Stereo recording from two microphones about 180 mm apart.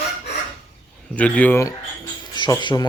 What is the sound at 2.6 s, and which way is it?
Speech, 25° left (ahead or behind).